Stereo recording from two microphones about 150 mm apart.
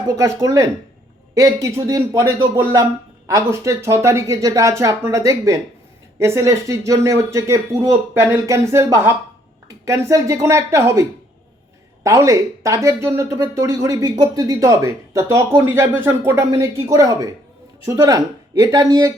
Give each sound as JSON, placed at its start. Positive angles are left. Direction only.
{"t": 0.2, "sound": "speech", "side_deg": -20}
{"t": 12.0, "sound": "speech", "side_deg": -20}